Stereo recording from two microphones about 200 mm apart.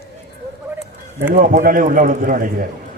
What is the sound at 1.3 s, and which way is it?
Speech, 45° right (ahead or behind).